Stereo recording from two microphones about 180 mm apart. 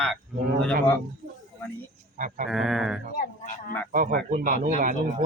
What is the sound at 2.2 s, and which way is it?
Sheep, 45° right (ahead or behind).